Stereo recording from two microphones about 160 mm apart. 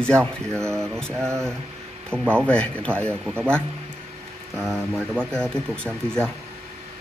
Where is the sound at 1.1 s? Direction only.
15° right (ahead or behind).